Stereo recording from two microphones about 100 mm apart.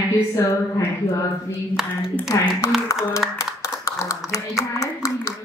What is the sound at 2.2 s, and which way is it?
A woman's voice, 30° left (ahead or behind).